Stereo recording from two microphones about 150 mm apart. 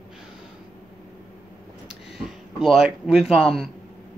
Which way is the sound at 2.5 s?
5° right (ahead or behind).